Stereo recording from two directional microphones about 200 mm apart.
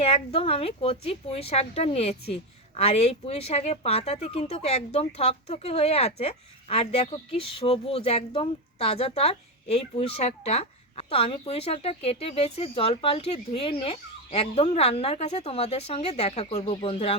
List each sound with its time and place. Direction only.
0.0 s a woman's voice: 30° left (ahead or behind)